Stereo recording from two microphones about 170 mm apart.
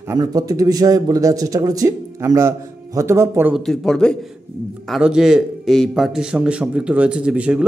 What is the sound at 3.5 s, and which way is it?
A man's voice, 5° left (ahead or behind).